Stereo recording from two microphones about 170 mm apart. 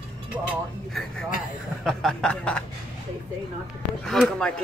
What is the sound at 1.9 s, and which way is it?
Speech, centre (ahead or behind).